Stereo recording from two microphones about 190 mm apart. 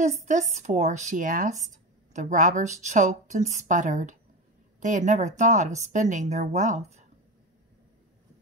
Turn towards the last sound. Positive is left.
turn(degrees=-40)  # may be behind; listen again after turning